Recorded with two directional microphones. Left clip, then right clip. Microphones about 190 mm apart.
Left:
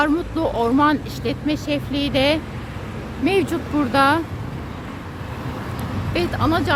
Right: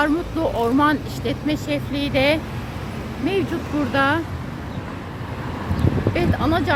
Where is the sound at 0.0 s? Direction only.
15° left (ahead or behind).